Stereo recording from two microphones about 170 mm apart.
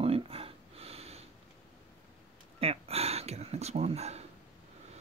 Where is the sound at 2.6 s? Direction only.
35° right (ahead or behind).